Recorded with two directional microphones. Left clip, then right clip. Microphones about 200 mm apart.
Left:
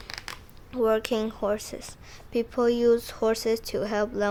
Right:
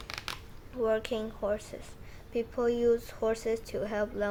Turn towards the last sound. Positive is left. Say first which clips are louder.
# left 5 dB
turn(degrees=40)  # may be behind; listen again after turning